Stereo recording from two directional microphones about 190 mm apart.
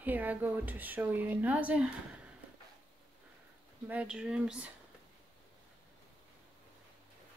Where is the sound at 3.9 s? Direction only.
5° right (ahead or behind).